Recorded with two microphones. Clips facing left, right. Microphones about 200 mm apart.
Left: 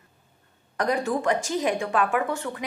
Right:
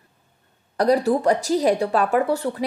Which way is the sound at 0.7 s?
35° right (ahead or behind).